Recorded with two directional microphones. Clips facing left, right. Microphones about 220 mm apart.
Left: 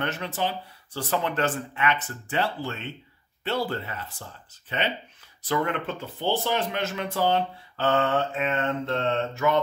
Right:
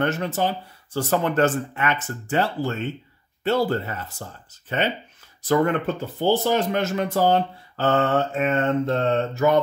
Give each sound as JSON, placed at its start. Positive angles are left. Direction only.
{"t": 0.0, "sound": "speech", "side_deg": -45}